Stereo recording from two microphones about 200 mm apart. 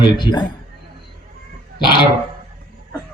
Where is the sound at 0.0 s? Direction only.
20° left (ahead or behind).